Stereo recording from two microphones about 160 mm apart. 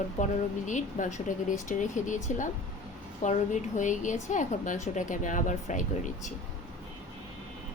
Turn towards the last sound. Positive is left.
turn(degrees=50)  # may be behind; listen again after turning